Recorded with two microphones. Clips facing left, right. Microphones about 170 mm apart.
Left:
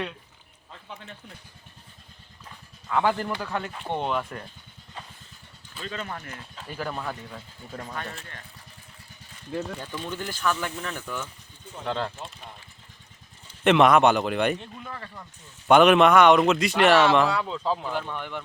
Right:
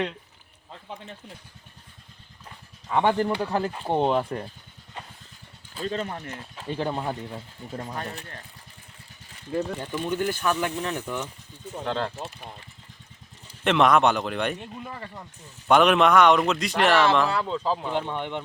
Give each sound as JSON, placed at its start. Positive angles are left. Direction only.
{"t": 2.9, "sound": "speech", "side_deg": -25}
{"t": 5.7, "sound": "speech", "side_deg": -35}
{"t": 6.1, "sound": "speech", "side_deg": -25}
{"t": 9.5, "sound": "speech", "side_deg": -10}
{"t": 11.9, "sound": "speech", "side_deg": 0}
{"t": 13.7, "sound": "speech", "side_deg": 5}
{"t": 14.6, "sound": "speech", "side_deg": -15}
{"t": 15.6, "sound": "speech", "side_deg": 0}
{"t": 17.9, "sound": "speech", "side_deg": -25}